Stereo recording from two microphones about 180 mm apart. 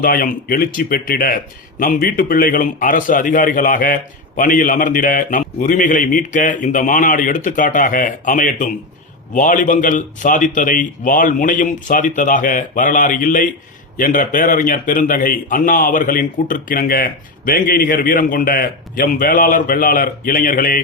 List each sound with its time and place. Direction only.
0.0 s a man's voice: 50° left (ahead or behind)